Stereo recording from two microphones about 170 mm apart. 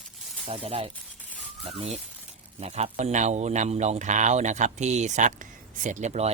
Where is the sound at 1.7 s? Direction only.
40° right (ahead or behind).